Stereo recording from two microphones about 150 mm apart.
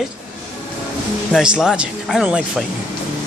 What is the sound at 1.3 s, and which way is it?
Speech, 5° right (ahead or behind).